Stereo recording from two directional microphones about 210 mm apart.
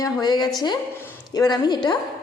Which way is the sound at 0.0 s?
20° left (ahead or behind).